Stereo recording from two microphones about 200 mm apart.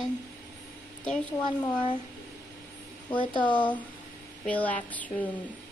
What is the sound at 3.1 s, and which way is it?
Speech, 25° left (ahead or behind).